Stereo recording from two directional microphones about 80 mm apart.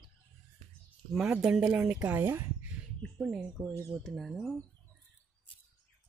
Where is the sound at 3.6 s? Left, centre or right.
Right.